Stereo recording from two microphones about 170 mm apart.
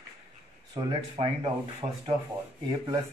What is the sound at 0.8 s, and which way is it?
Speech, 25° right (ahead or behind).